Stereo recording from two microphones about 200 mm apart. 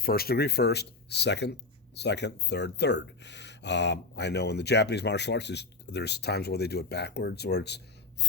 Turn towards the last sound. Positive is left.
turn(degrees=55)  # may be behind; listen again after turning